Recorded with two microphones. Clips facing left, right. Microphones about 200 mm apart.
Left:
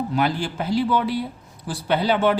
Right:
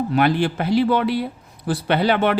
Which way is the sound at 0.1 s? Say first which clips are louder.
Right 5 dB; 65° right (ahead or behind).